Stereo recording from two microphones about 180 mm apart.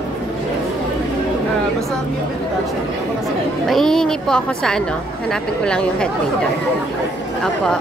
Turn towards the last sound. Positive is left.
turn(degrees=5)  # may be behind; listen again after turning